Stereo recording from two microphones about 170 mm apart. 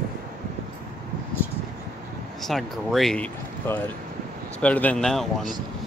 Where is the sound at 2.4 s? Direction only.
Centre (ahead or behind).